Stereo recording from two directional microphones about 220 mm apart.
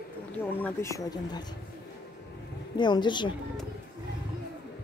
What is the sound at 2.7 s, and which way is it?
Speech, 20° left (ahead or behind).